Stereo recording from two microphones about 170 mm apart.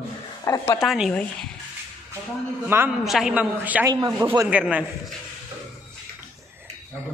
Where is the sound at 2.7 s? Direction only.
15° right (ahead or behind).